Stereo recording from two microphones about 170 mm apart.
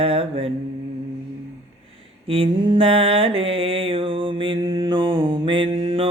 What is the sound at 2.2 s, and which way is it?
Mantra, 35° right (ahead or behind).